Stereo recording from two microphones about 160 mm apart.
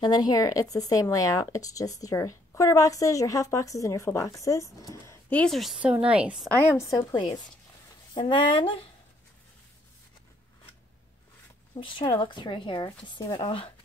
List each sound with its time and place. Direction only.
0.0 s speech: 25° left (ahead or behind)
5.4 s a woman's voice: centre (ahead or behind)
6.5 s a woman's voice: 15° left (ahead or behind)
8.1 s speech: 30° left (ahead or behind)
11.7 s speech: 30° left (ahead or behind)